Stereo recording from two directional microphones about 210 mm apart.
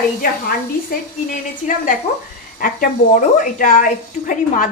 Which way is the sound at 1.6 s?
40° left (ahead or behind).